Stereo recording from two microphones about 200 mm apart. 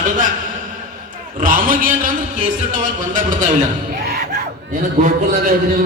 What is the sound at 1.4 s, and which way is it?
A man's voice, 45° right (ahead or behind).